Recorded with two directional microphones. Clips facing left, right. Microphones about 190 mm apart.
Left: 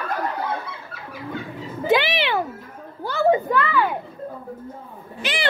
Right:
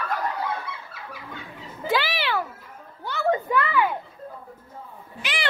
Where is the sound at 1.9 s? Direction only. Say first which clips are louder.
Left 5 dB; 20° left (ahead or behind).